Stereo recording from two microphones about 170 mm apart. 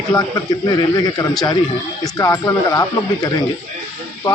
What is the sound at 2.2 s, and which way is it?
Speech, 20° left (ahead or behind).